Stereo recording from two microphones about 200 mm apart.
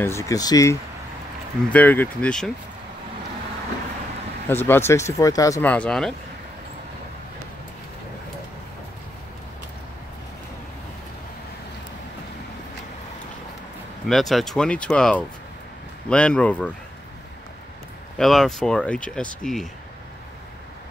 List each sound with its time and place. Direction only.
0.0 s speech: 15° left (ahead or behind)
4.5 s speech: 10° left (ahead or behind)
14.0 s speech: centre (ahead or behind)
18.1 s speech: centre (ahead or behind)